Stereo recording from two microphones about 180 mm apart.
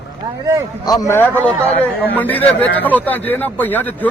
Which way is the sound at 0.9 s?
20° left (ahead or behind).